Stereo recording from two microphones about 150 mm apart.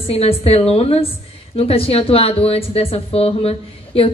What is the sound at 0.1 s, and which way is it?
A woman's voice, 40° left (ahead or behind).